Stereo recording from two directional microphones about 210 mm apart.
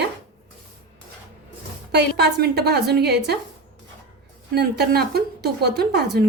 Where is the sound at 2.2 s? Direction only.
50° right (ahead or behind).